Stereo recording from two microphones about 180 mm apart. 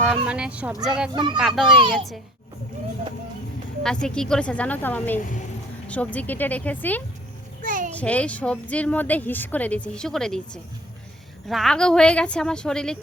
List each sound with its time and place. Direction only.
0.0 s a woman's voice: 5° right (ahead or behind)
1.1 s speech: 25° right (ahead or behind)
1.4 s a woman's voice: 5° right (ahead or behind)
3.8 s speech: 5° left (ahead or behind)
7.6 s a sound: 50° right (ahead or behind)
7.9 s a woman's voice: 5° left (ahead or behind)